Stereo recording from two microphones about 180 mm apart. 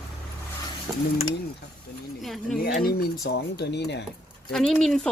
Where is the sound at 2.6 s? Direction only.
65° left (ahead or behind).